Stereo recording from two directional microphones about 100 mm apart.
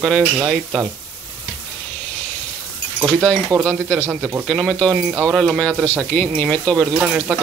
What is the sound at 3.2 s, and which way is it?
Speech, 25° right (ahead or behind).